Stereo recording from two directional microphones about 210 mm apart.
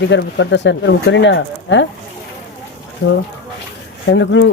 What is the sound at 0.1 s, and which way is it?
Speech, 60° left (ahead or behind).